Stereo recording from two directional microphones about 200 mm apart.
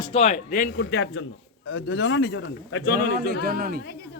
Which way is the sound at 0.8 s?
60° left (ahead or behind).